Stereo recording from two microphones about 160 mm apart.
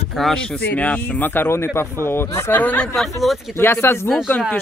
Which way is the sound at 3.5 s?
15° left (ahead or behind).